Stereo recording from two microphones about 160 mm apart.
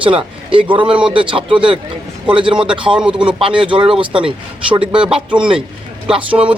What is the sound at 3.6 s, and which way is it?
Speech, 30° right (ahead or behind).